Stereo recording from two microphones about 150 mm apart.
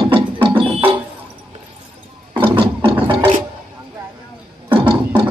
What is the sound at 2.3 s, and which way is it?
Ratchet, 35° right (ahead or behind).